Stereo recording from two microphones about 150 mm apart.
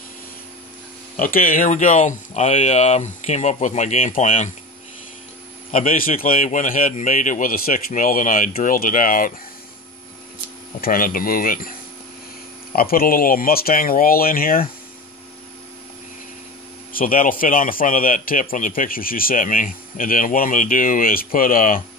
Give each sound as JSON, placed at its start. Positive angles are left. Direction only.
{"t": 1.1, "sound": "speech", "side_deg": 65}
{"t": 5.7, "sound": "a man's voice", "side_deg": 60}
{"t": 10.8, "sound": "a man's voice", "side_deg": 70}
{"t": 12.7, "sound": "a man's voice", "side_deg": 80}
{"t": 16.9, "sound": "a man's voice", "side_deg": 65}